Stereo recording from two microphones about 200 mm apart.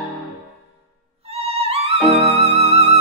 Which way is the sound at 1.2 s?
30° right (ahead or behind).